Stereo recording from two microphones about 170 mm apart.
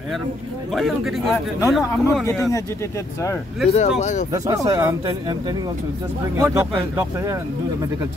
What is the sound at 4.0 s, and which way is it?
Speech, 45° left (ahead or behind).